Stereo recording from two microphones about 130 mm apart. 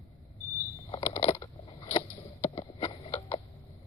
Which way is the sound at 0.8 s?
45° left (ahead or behind).